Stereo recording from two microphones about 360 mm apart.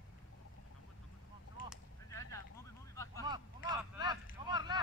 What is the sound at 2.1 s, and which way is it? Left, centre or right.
Vehicle, centre.